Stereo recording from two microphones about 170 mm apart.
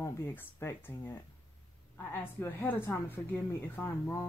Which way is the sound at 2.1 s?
15° left (ahead or behind).